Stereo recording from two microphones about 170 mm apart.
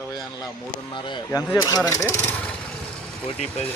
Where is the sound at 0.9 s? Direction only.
25° left (ahead or behind).